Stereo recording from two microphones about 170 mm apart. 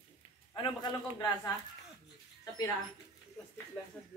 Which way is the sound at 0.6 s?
25° left (ahead or behind).